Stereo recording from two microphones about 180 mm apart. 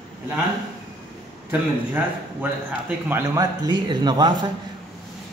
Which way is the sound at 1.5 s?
10° right (ahead or behind).